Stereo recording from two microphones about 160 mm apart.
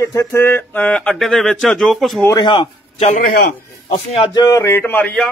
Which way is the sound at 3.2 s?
75° left (ahead or behind).